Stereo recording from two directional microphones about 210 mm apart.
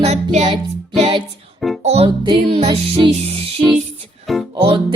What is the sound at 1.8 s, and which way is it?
Music, 30° right (ahead or behind).